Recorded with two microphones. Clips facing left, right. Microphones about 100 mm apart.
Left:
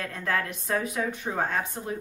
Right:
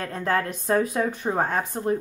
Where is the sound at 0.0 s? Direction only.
35° right (ahead or behind).